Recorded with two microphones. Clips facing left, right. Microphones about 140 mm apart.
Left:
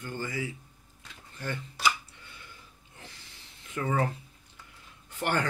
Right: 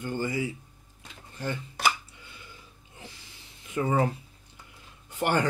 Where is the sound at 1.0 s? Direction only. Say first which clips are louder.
Right 4 dB; 20° right (ahead or behind).